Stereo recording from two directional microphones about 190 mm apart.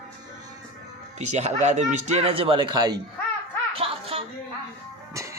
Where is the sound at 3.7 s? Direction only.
30° right (ahead or behind).